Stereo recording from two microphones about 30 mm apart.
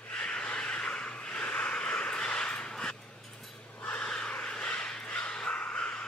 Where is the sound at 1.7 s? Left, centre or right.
Left.